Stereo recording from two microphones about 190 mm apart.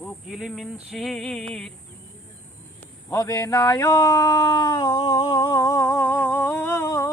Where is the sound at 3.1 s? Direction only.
15° left (ahead or behind).